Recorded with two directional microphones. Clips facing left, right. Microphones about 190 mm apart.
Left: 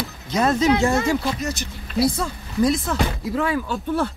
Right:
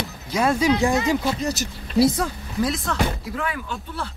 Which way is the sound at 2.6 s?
Centre (ahead or behind).